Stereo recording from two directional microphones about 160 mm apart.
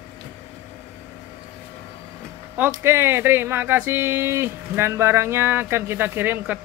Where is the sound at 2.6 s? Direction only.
15° right (ahead or behind).